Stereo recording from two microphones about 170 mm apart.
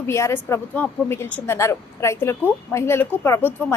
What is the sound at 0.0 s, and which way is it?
A woman's voice, 15° left (ahead or behind).